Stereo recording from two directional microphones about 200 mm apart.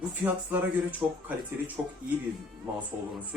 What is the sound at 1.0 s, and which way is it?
Speech, 15° right (ahead or behind).